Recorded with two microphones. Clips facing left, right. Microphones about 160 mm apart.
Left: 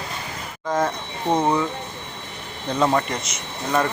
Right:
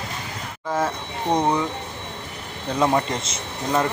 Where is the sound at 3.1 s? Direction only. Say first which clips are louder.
Right 1 dB; 25° right (ahead or behind).